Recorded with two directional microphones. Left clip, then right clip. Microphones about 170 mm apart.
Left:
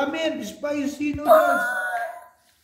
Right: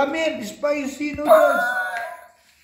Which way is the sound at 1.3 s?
5° right (ahead or behind).